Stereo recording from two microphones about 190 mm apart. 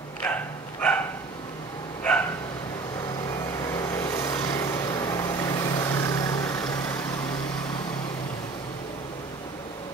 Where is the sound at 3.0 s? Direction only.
20° left (ahead or behind).